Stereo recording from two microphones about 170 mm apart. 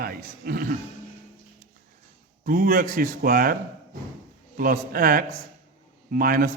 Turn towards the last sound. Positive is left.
turn(degrees=-60)  # may be behind; listen again after turning